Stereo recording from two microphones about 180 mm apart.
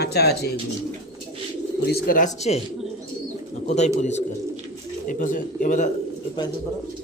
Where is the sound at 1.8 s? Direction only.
55° left (ahead or behind); by 2.6 s 40° left (ahead or behind).